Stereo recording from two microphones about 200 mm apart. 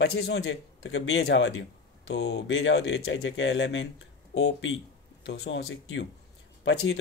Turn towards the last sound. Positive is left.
turn(degrees=65)  # may be behind; listen again after turning